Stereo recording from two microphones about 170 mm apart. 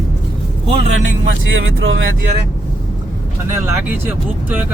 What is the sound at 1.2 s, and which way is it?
Speech, 90° right.